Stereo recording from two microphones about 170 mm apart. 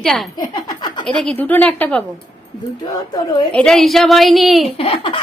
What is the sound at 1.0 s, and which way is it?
A woman's voice, 5° left (ahead or behind).